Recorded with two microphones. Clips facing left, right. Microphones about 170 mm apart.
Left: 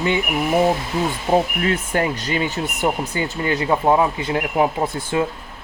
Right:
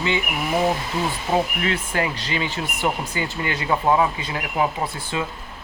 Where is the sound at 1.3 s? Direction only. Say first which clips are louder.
Left 4 dB; 25° left (ahead or behind).